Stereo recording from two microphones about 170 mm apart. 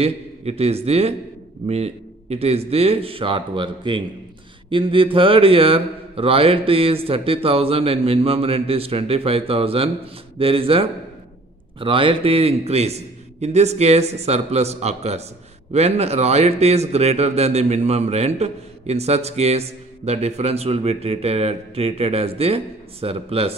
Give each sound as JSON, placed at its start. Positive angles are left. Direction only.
{"t": 0.0, "sound": "a man's voice", "side_deg": -35}